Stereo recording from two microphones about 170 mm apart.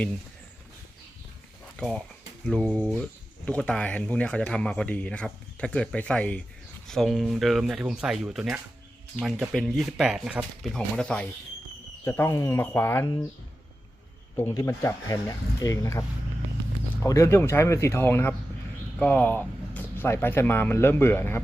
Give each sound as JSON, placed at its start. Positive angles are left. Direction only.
{"t": 1.7, "sound": "speech", "side_deg": 5}
{"t": 14.5, "sound": "speech", "side_deg": 15}